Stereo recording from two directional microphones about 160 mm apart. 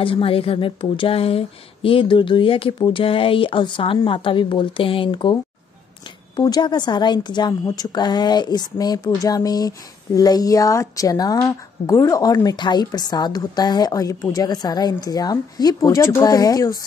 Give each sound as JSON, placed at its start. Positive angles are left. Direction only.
{"t": 0.0, "sound": "a woman's voice", "side_deg": 35}